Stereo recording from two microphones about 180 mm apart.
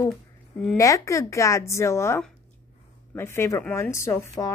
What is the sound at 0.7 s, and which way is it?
A woman's voice, 15° left (ahead or behind).